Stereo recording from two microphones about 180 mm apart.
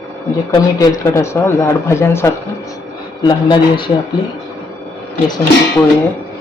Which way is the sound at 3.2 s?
25° left (ahead or behind).